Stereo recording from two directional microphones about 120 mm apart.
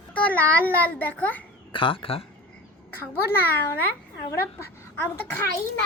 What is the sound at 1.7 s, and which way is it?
Speech, 45° left (ahead or behind).